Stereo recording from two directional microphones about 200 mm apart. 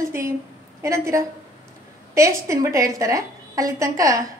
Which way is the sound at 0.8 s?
15° right (ahead or behind).